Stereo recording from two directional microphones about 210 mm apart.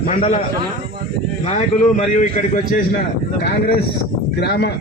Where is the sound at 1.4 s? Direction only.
35° left (ahead or behind).